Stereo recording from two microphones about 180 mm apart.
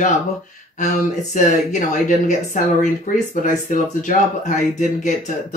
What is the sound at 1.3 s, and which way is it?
Speech, 45° left (ahead or behind).